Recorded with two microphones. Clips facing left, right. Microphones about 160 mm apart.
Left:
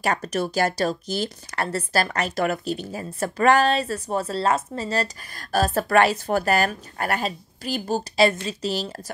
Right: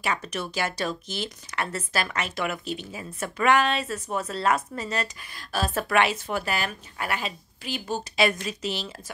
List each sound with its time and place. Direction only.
0.0 s speech: 45° left (ahead or behind)